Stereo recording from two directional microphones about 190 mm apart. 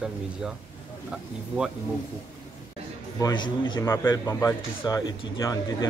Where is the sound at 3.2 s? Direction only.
20° left (ahead or behind).